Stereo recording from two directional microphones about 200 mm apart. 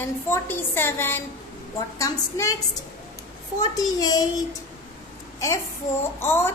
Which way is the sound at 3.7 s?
20° left (ahead or behind).